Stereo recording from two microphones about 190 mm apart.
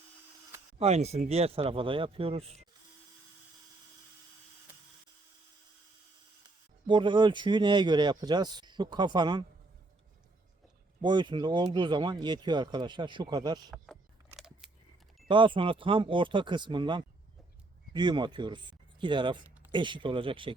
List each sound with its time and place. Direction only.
0.8 s speech: 35° right (ahead or behind)
6.8 s speech: 25° right (ahead or behind)
11.0 s speech: 25° right (ahead or behind)
14.3 s a sound: centre (ahead or behind)
15.3 s speech: 25° right (ahead or behind)